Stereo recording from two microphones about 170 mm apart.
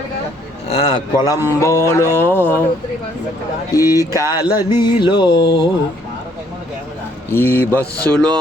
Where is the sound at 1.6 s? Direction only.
15° left (ahead or behind).